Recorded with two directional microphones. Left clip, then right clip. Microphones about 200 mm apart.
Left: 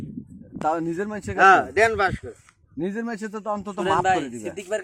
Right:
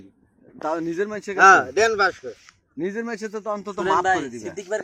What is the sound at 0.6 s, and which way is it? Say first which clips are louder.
Speech: even; 50° left (ahead or behind).